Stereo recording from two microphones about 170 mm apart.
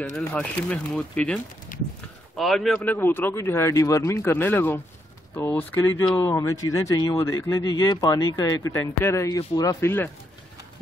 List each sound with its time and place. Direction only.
0.3 s speech: 5° left (ahead or behind)
1.7 s a sound: 55° left (ahead or behind)
2.3 s speech: centre (ahead or behind)